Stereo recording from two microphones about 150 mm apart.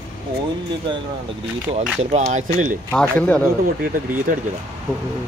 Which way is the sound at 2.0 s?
50° right (ahead or behind).